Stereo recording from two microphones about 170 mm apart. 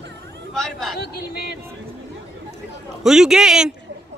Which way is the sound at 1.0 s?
70° left (ahead or behind).